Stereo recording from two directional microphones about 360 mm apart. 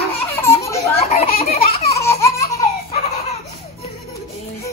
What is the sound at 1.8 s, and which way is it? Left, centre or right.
Laughter, centre.